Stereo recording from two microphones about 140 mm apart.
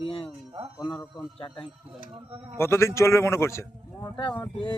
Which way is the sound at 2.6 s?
20° left (ahead or behind).